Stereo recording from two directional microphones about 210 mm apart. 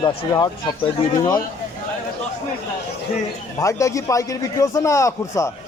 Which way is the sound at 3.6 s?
15° left (ahead or behind).